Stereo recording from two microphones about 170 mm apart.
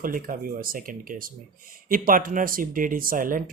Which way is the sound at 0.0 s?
55° right (ahead or behind).